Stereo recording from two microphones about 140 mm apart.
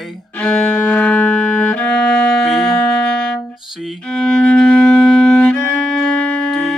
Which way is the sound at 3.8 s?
5° left (ahead or behind).